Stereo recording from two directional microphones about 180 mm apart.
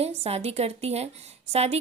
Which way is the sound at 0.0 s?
35° right (ahead or behind).